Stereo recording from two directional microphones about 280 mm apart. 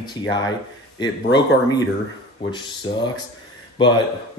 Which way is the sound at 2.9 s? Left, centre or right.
Centre.